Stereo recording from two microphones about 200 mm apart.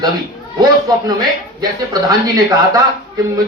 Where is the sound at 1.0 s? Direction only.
20° right (ahead or behind).